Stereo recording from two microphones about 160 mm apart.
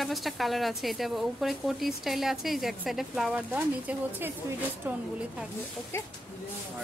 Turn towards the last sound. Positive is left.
turn(degrees=15)  # may be behind; listen again after turning